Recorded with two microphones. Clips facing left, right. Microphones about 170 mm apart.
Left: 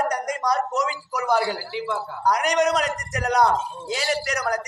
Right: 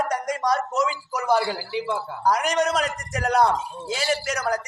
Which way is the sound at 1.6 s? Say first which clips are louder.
Right 1 dB; 15° right (ahead or behind).